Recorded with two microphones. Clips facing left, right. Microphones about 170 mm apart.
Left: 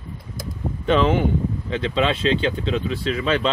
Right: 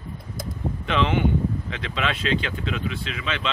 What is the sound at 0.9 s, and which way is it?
Speech, 40° left (ahead or behind).